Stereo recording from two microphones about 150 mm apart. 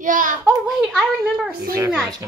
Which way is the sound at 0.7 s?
5° right (ahead or behind).